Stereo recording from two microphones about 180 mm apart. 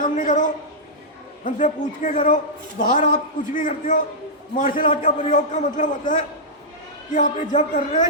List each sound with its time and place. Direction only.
0.0 s a man's voice: 45° left (ahead or behind)